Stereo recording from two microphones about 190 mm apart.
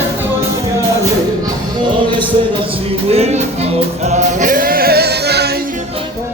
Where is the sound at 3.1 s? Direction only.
35° right (ahead or behind); by 5.5 s 60° right (ahead or behind).